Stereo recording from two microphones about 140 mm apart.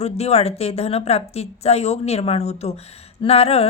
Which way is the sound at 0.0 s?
50° left (ahead or behind).